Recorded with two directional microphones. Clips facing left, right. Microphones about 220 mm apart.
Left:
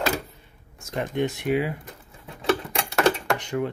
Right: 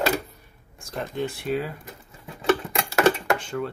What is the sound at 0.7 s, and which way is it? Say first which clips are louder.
Speech: left 3 dB; 20° left (ahead or behind).